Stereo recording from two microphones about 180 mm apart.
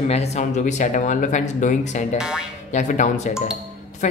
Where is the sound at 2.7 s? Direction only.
40° left (ahead or behind).